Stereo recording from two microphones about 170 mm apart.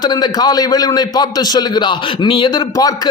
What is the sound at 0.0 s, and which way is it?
A man's voice, 25° left (ahead or behind).